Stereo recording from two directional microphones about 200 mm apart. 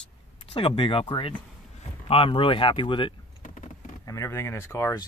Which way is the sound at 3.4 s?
35° left (ahead or behind).